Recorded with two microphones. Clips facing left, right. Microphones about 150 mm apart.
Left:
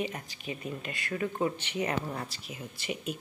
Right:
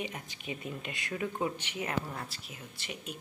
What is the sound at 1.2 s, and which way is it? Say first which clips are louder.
Speech: left 3 dB; 10° right (ahead or behind).